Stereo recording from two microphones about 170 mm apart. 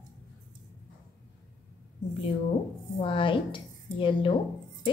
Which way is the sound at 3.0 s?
30° left (ahead or behind).